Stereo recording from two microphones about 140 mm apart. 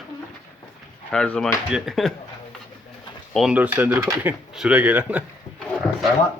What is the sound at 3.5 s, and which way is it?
Speech, 10° right (ahead or behind).